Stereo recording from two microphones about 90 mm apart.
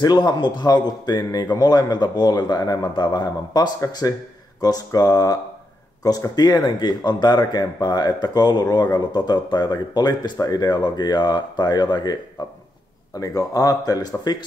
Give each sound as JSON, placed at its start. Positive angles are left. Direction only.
{"t": 0.0, "sound": "a man's voice", "side_deg": 50}